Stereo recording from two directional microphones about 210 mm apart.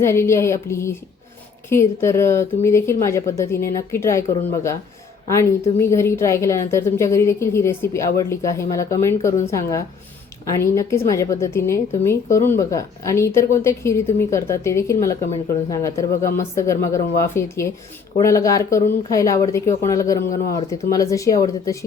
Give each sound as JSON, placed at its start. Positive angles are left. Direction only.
{"t": 0.0, "sound": "a woman's voice", "side_deg": 10}